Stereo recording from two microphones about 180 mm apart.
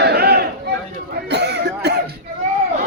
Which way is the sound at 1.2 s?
70° right (ahead or behind).